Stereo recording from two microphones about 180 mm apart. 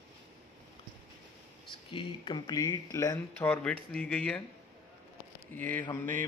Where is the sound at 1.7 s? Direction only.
30° left (ahead or behind); by 4.4 s 5° left (ahead or behind).